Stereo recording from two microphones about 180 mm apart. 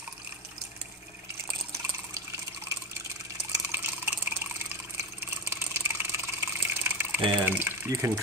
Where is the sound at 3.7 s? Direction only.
15° right (ahead or behind).